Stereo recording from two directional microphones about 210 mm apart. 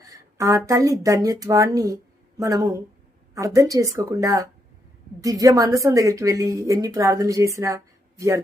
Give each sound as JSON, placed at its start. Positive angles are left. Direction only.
{"t": 0.0, "sound": "a woman's voice", "side_deg": -15}